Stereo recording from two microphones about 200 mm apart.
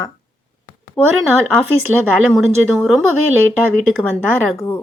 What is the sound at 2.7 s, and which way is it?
Speech, centre (ahead or behind).